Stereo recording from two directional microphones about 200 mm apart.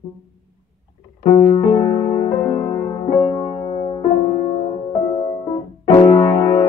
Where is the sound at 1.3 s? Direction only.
20° left (ahead or behind).